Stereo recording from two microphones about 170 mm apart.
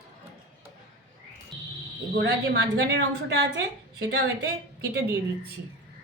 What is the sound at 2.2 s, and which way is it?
A woman's voice, 80° right.